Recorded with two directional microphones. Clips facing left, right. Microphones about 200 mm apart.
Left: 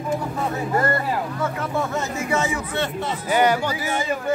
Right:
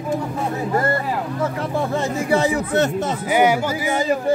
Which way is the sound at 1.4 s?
30° right (ahead or behind).